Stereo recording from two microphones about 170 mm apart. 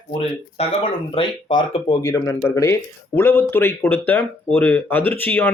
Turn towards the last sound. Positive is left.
turn(degrees=10)  # may be behind; listen again after turning